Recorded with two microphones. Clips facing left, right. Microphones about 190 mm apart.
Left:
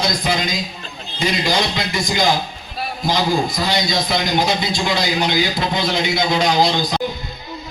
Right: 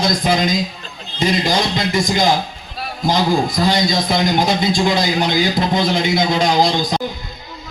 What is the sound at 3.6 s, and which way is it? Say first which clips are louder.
A man's voice: right 3 dB; 50° right (ahead or behind).